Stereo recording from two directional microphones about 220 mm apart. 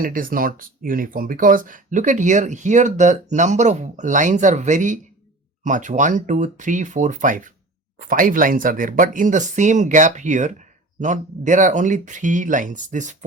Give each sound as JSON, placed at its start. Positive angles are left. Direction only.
{"t": 0.0, "sound": "speech", "side_deg": -40}